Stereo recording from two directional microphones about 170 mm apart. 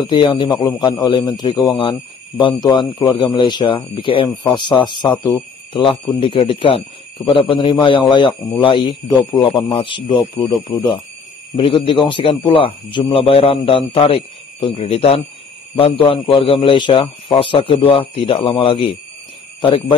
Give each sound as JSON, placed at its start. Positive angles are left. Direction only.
{"t": 0.0, "sound": "speech", "side_deg": 30}